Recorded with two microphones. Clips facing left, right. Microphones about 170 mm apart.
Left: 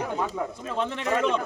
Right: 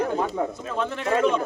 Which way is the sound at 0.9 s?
45° right (ahead or behind).